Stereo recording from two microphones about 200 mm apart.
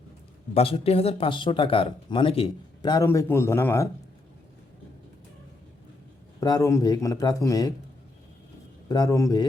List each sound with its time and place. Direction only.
0.5 s speech: 30° left (ahead or behind); by 3.8 s 10° left (ahead or behind)
6.4 s speech: 15° left (ahead or behind)
8.9 s speech: 20° left (ahead or behind)